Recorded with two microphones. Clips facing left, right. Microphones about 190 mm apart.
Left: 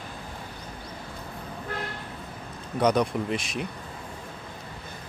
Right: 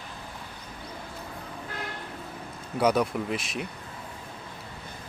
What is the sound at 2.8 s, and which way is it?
Speech, 5° right (ahead or behind).